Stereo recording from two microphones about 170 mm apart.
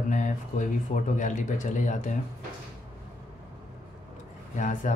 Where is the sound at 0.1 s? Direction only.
50° left (ahead or behind).